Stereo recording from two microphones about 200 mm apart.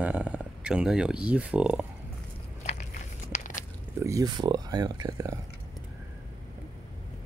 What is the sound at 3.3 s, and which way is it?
Biting, 35° left (ahead or behind).